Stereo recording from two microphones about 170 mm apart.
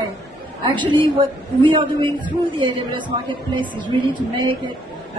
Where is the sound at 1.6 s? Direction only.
30° right (ahead or behind).